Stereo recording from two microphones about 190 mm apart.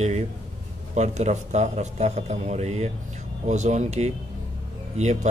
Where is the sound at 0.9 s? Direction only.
35° right (ahead or behind).